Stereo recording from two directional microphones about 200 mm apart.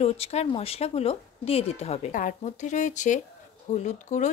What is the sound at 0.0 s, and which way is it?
A woman's voice, 30° left (ahead or behind).